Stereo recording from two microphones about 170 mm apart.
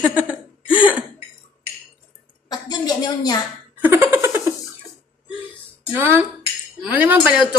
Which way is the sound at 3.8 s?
15° right (ahead or behind).